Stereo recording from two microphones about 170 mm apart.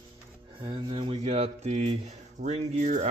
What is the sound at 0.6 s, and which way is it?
Speech, 25° right (ahead or behind).